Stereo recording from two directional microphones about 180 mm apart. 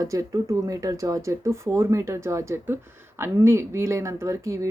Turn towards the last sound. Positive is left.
turn(degrees=-15)  # may be behind; listen again after turning